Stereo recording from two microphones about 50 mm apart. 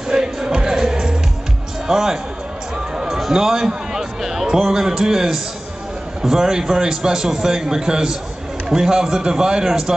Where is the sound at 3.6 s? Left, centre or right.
Centre.